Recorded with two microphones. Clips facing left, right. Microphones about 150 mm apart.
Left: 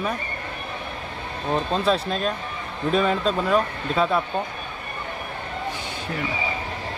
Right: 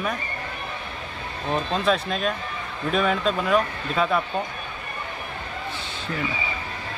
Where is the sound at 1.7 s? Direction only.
30° left (ahead or behind).